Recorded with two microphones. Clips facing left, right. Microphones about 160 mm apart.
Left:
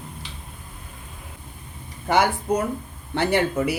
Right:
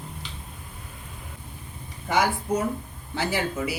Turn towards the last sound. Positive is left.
turn(degrees=60)  # may be behind; listen again after turning